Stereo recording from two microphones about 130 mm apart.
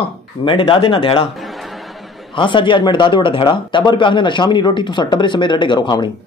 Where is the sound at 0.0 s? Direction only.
45° left (ahead or behind).